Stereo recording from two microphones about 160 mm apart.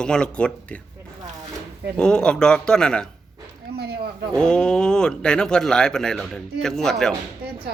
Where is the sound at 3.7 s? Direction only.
85° right.